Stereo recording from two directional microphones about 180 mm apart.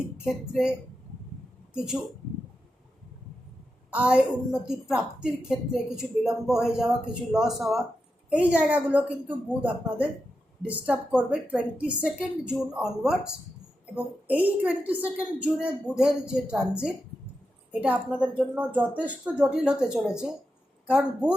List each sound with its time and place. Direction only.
0.3 s a woman's voice: 5° right (ahead or behind)
3.9 s a woman's voice: 5° right (ahead or behind)